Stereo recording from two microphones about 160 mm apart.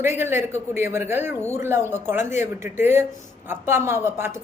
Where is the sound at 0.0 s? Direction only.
15° right (ahead or behind).